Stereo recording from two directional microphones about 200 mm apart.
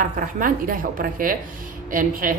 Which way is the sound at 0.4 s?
45° right (ahead or behind).